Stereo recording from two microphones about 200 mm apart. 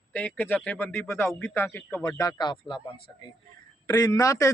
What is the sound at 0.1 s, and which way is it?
Speech, 10° left (ahead or behind).